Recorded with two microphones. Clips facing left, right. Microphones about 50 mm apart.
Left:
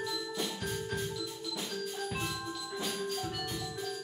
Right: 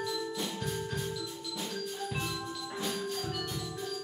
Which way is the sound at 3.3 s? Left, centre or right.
Centre.